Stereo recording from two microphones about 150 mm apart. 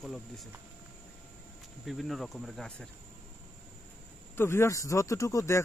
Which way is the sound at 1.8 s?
Centre (ahead or behind).